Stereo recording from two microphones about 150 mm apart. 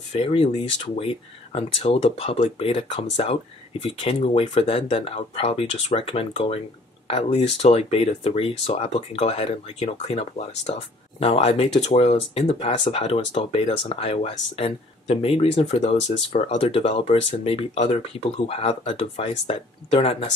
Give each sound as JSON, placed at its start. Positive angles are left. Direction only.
{"t": 0.1, "sound": "speech", "side_deg": 40}